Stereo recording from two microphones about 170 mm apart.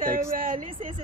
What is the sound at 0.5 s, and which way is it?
Speech, 30° right (ahead or behind).